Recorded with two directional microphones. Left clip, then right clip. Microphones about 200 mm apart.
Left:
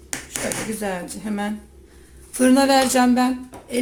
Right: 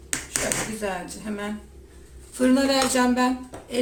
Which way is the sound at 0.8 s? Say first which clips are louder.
Left 2 dB; 45° left (ahead or behind).